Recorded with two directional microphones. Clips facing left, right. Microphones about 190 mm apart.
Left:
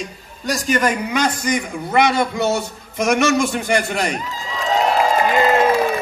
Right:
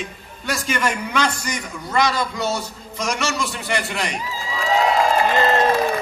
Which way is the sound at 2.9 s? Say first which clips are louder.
Left 8 dB; 55° left (ahead or behind).